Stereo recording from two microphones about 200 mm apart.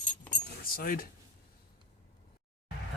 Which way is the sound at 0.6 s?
45° left (ahead or behind).